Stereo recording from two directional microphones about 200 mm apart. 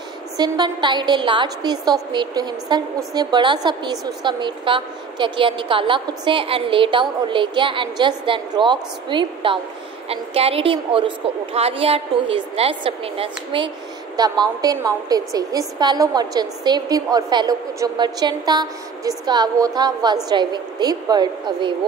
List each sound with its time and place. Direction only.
0.4 s a woman's voice: 20° right (ahead or behind)